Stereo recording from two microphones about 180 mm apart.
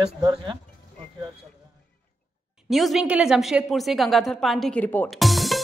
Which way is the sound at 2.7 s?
Centre (ahead or behind).